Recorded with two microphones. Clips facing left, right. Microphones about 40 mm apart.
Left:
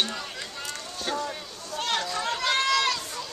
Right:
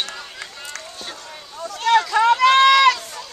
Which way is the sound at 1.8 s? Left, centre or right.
Right.